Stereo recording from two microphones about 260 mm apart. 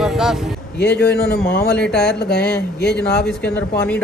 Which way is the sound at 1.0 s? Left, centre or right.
Left.